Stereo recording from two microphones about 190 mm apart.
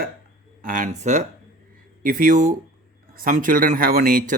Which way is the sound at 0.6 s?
45° right (ahead or behind).